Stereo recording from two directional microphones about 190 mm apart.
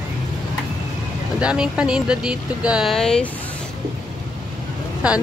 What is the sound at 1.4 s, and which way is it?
Speech, 5° right (ahead or behind).